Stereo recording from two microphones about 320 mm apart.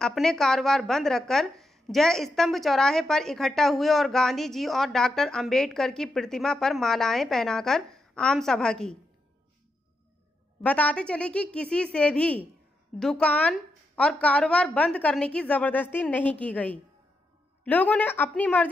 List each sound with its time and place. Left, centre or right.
0.0 s speech: centre
10.6 s speech: centre